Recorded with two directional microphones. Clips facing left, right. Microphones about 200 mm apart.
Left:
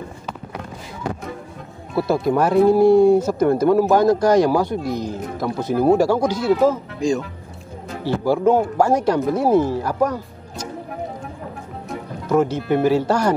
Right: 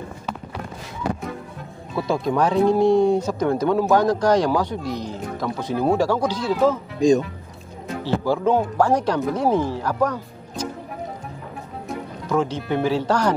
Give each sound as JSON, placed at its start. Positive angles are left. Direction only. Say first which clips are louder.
{"t": 2.0, "sound": "speech", "louder": "left 3 dB", "side_deg": 5}
{"t": 7.0, "sound": "speech", "louder": "right 4 dB", "side_deg": -20}
{"t": 8.0, "sound": "speech", "louder": "left 3 dB", "side_deg": 10}
{"t": 11.9, "sound": "speech", "louder": "left 4 dB", "side_deg": 10}